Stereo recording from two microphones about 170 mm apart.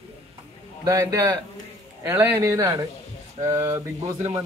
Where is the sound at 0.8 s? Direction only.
20° right (ahead or behind).